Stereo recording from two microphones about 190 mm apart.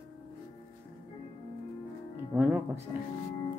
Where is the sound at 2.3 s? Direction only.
10° right (ahead or behind).